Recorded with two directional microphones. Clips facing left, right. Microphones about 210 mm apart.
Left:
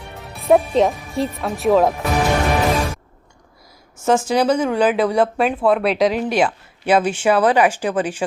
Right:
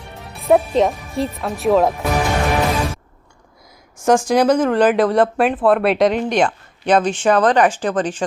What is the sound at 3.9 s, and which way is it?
Speech, 5° left (ahead or behind).